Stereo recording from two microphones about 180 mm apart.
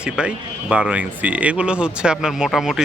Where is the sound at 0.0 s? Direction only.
5° right (ahead or behind).